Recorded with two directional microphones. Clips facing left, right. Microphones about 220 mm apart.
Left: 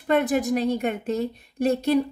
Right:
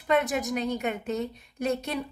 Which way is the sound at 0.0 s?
35° left (ahead or behind).